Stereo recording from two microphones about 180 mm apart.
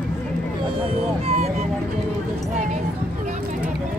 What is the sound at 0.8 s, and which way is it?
Speech, 35° right (ahead or behind).